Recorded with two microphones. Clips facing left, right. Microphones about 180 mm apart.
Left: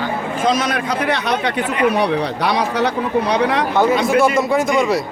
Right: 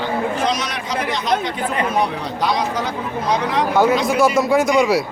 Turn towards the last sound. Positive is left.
turn(degrees=0)  # may be behind; listen again after turning